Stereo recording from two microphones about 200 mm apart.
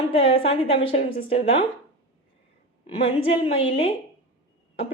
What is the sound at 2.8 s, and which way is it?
A woman's voice, 30° left (ahead or behind).